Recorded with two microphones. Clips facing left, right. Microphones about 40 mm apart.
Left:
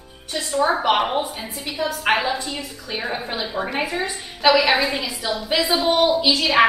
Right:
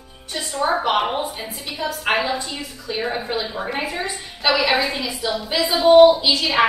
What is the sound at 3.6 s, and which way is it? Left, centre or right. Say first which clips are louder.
Speech: left 1 dB; centre.